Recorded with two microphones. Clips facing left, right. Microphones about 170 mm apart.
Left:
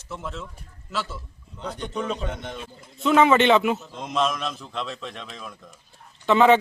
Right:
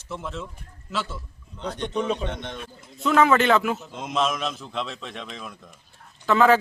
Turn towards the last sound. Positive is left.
turn(degrees=20)  # may be behind; listen again after turning